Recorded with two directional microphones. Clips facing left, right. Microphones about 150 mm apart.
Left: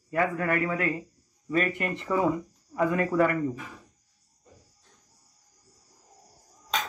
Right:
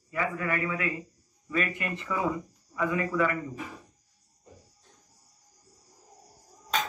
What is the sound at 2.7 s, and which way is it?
Speech, 45° left (ahead or behind).